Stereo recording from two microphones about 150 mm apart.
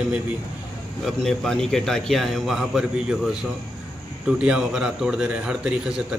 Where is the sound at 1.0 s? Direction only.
5° left (ahead or behind).